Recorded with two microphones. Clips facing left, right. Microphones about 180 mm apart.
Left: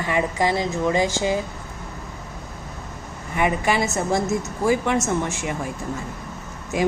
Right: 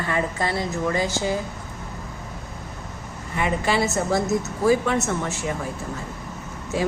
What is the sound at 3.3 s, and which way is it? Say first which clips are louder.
A woman's voice: left 2 dB; 15° left (ahead or behind).